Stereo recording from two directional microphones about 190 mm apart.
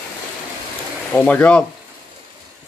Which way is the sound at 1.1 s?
10° left (ahead or behind).